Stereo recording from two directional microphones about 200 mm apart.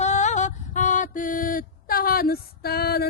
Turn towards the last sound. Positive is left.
turn(degrees=50)  # may be behind; listen again after turning